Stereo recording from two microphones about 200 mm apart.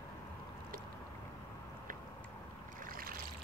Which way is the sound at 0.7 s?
45° right (ahead or behind).